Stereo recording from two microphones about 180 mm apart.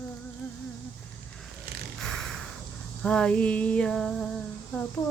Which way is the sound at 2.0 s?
Centre (ahead or behind).